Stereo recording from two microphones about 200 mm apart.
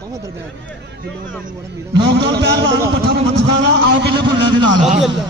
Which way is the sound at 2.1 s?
55° right (ahead or behind).